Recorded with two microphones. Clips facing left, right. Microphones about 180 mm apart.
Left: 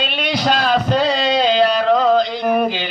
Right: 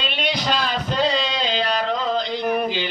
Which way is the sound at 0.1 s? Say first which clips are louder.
Left 3 dB; 50° left (ahead or behind).